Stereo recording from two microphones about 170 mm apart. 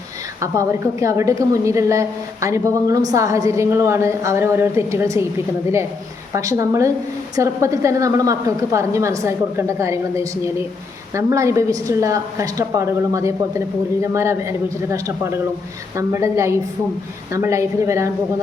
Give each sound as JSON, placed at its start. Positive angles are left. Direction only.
{"t": 0.3, "sound": "a woman's voice", "side_deg": -20}
{"t": 6.3, "sound": "a woman's voice", "side_deg": -20}